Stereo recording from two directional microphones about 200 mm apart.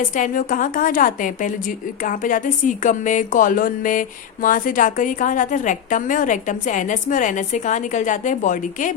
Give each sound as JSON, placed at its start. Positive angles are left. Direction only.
{"t": 0.2, "sound": "a woman's voice", "side_deg": 40}